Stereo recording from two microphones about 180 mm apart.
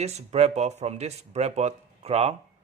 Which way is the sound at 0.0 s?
35° right (ahead or behind).